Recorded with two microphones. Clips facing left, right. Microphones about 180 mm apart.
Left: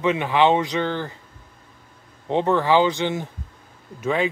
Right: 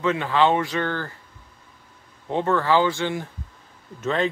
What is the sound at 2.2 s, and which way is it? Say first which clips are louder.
Speech: left 2 dB; 20° left (ahead or behind).